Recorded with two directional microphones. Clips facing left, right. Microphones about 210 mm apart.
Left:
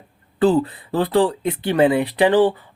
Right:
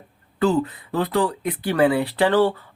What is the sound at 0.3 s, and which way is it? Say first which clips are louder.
Speech: left 3 dB; 30° left (ahead or behind).